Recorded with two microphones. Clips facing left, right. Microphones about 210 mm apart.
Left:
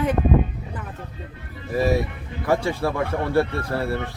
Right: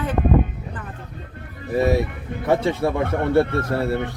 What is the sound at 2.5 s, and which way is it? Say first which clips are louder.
Speech: right 2 dB; 20° right (ahead or behind).